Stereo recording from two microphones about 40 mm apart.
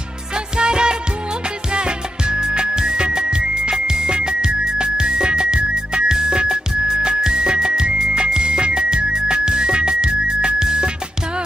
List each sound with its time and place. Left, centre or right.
0.6 s music: right